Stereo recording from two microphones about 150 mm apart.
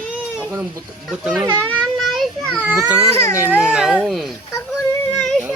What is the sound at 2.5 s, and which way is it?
Speech, 10° right (ahead or behind).